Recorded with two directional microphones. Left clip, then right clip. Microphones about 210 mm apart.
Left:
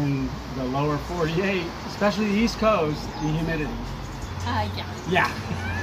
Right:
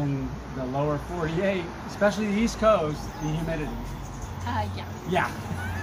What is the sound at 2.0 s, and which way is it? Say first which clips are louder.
Speech: left 1 dB; 15° right (ahead or behind).